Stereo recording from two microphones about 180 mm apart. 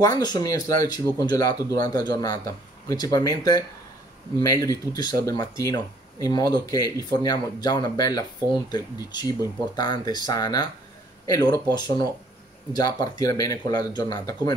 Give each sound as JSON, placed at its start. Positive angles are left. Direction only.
{"t": 0.0, "sound": "speech", "side_deg": 20}